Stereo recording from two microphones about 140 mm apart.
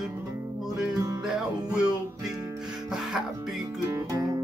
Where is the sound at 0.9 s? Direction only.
25° right (ahead or behind).